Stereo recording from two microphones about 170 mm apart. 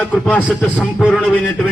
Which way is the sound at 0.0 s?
10° left (ahead or behind).